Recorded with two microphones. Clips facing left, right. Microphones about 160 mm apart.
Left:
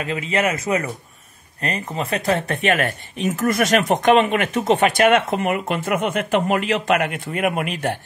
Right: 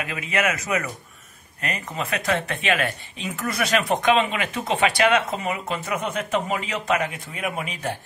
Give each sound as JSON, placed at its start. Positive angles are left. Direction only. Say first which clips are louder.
{"t": 0.0, "sound": "speech", "louder": "left 4 dB", "side_deg": 30}